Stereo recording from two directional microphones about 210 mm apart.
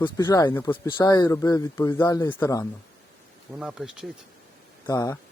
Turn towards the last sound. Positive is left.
turn(degrees=15)  # may be behind; listen again after turning